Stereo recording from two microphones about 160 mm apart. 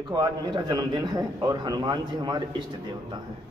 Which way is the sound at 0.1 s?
25° right (ahead or behind).